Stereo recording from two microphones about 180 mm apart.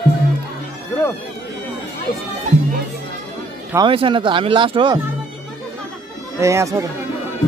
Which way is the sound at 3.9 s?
30° right (ahead or behind).